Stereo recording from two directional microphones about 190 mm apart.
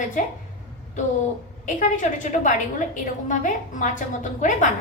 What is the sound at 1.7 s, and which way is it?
A woman's voice, 45° left (ahead or behind).